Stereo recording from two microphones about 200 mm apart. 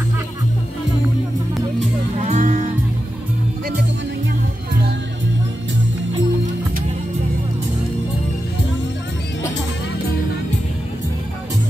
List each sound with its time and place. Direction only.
2.2 s music: 40° right (ahead or behind)